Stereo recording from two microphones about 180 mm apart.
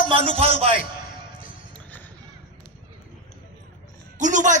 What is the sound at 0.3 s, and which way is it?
Speech, 35° right (ahead or behind).